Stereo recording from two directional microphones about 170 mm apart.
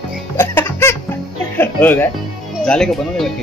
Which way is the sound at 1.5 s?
10° left (ahead or behind).